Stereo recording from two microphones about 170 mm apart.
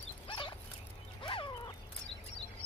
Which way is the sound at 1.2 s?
30° left (ahead or behind).